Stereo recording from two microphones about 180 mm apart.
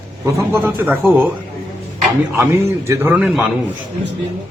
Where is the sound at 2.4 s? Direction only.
15° right (ahead or behind).